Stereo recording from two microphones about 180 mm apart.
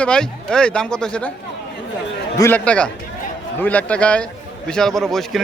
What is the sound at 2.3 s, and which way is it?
Speech, 15° left (ahead or behind).